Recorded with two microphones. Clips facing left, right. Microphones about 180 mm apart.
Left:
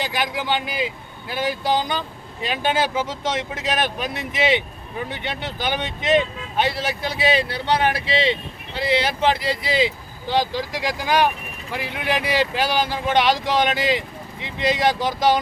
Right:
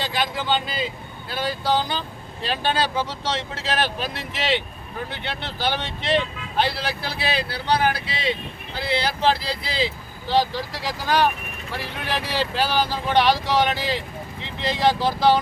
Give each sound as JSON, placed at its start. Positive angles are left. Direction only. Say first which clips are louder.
{"t": 0.0, "sound": "speech", "louder": "left 1 dB", "side_deg": 15}